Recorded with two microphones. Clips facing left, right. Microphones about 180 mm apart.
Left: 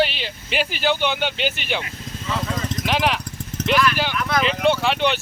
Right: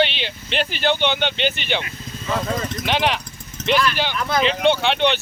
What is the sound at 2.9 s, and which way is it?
Speech, centre (ahead or behind).